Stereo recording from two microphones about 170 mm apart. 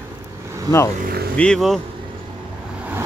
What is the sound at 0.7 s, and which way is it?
Speech, 20° left (ahead or behind).